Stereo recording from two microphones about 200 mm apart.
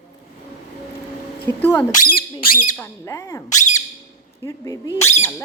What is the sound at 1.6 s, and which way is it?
Speech, 10° left (ahead or behind).